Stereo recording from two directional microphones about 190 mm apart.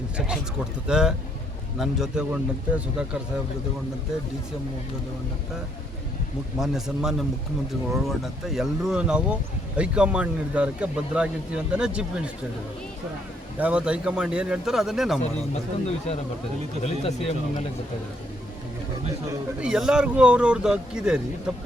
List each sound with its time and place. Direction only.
0.9 s speech: 5° right (ahead or behind)
6.6 s speech: centre (ahead or behind)
13.6 s speech: 5° right (ahead or behind)
16.8 s speech: 30° left (ahead or behind)
19.3 s speech: 5° right (ahead or behind)